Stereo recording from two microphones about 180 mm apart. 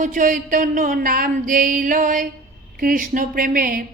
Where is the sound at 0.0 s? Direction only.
45° right (ahead or behind).